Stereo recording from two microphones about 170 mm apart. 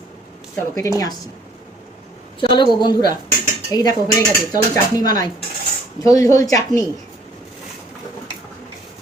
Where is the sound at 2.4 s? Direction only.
25° left (ahead or behind).